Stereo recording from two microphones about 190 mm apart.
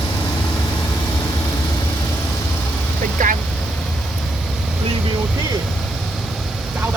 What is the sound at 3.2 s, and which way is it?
Vehicle, 45° right (ahead or behind).